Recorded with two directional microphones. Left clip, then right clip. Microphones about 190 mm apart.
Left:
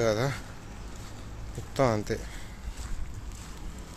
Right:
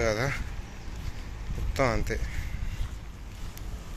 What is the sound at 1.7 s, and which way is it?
Speech, 25° left (ahead or behind).